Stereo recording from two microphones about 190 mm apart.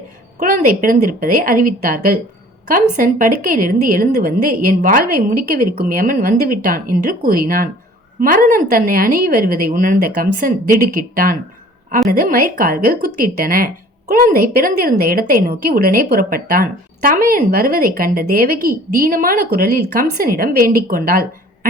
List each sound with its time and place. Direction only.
0.3 s a woman's voice: 45° right (ahead or behind)